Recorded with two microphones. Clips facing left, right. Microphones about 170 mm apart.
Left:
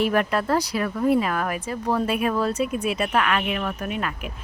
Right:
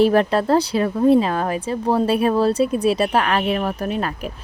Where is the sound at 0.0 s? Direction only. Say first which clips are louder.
Right 6 dB; 30° right (ahead or behind).